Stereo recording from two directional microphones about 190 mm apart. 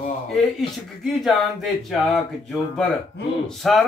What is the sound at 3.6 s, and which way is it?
Speech, centre (ahead or behind).